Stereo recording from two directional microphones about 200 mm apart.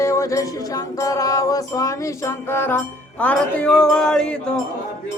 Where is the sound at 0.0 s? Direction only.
15° left (ahead or behind).